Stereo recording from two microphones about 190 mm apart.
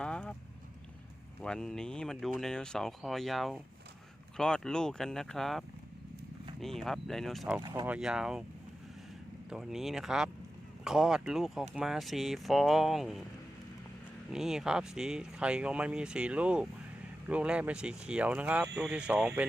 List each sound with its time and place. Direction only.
0.0 s vehicle: 5° left (ahead or behind)
1.4 s speech: 5° left (ahead or behind)
7.6 s speech: 20° right (ahead or behind)
7.9 s speech: 5° right (ahead or behind)
9.5 s speech: centre (ahead or behind)
14.3 s speech: centre (ahead or behind)